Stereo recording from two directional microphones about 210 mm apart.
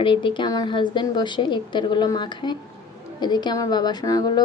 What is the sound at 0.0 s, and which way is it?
Speech, 25° left (ahead or behind).